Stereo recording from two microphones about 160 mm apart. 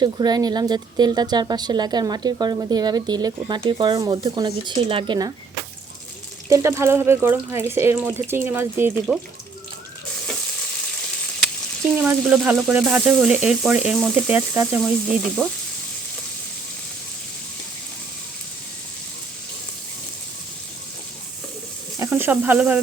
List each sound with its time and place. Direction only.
0.0 s speech: 25° right (ahead or behind)
6.5 s speech: 20° right (ahead or behind)
11.9 s speech: 10° right (ahead or behind)
14.8 s sizzle: 5° right (ahead or behind)
21.9 s sizzle: 15° right (ahead or behind)